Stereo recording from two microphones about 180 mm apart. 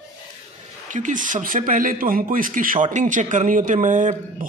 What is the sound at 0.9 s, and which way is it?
Speech, 45° right (ahead or behind).